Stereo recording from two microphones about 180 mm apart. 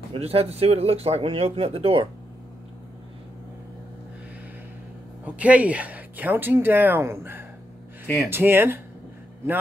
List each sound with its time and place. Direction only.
0.1 s speech: 35° right (ahead or behind)
5.2 s speech: 5° right (ahead or behind)